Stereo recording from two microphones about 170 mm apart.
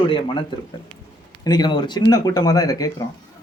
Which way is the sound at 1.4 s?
25° left (ahead or behind).